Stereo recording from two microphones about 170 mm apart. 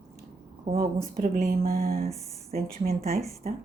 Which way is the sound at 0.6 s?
55° right (ahead or behind).